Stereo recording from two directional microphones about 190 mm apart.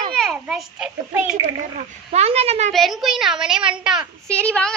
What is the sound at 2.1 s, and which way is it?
Speech, 35° right (ahead or behind).